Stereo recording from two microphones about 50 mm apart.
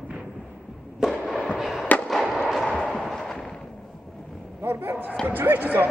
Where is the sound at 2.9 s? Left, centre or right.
Centre.